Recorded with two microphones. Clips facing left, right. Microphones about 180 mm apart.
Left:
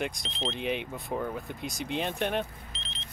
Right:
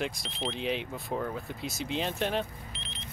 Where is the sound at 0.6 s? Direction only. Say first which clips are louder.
Left 1 dB; 55° left (ahead or behind).